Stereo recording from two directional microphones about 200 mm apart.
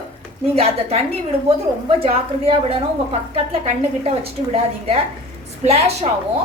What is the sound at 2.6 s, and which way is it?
A woman's voice, 30° right (ahead or behind).